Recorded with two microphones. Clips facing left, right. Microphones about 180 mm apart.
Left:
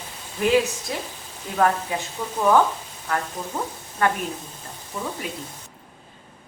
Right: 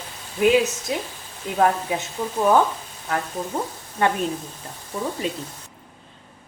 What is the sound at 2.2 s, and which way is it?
Speech, 20° right (ahead or behind).